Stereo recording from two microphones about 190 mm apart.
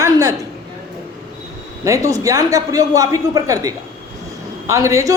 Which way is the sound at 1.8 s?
15° right (ahead or behind).